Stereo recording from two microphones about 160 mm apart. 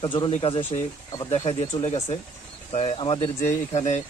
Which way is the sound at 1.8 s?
45° left (ahead or behind).